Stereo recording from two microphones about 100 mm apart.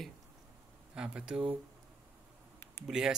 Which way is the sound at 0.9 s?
10° right (ahead or behind).